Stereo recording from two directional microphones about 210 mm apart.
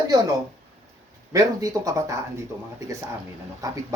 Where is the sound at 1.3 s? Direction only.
15° right (ahead or behind).